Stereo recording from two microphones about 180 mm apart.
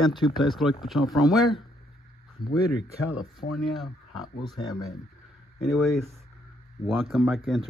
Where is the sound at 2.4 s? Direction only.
55° left (ahead or behind).